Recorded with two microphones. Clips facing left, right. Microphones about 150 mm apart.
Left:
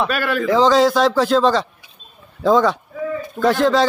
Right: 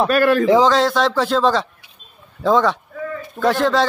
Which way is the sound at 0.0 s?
40° right (ahead or behind).